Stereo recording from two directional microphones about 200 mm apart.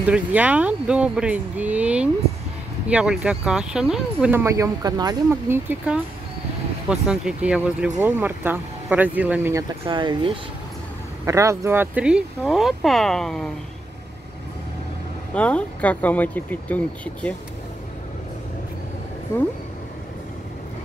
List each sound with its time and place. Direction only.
0.0 s speech: 5° right (ahead or behind)
9.8 s speech: 25° right (ahead or behind); by 13.5 s centre (ahead or behind)
15.3 s speech: 5° left (ahead or behind)